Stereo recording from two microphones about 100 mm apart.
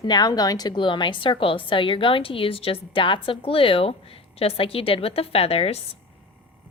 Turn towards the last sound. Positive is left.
turn(degrees=85)